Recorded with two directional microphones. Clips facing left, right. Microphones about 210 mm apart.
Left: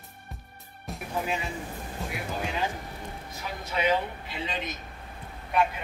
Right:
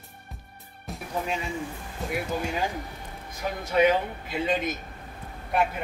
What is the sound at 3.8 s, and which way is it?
Speech, 45° right (ahead or behind).